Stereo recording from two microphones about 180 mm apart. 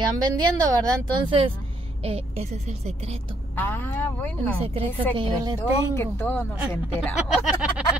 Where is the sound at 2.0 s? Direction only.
35° right (ahead or behind).